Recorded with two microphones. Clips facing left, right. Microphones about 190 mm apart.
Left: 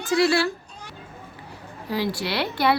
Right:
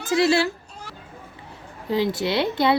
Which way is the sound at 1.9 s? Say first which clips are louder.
Right 4 dB; 20° right (ahead or behind).